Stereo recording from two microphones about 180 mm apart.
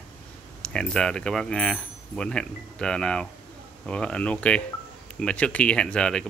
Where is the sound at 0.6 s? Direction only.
5° left (ahead or behind).